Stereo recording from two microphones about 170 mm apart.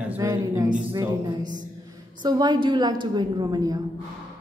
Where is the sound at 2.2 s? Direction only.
25° right (ahead or behind).